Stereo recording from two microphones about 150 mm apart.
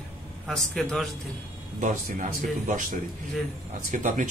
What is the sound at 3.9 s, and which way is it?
Speech, 60° right (ahead or behind).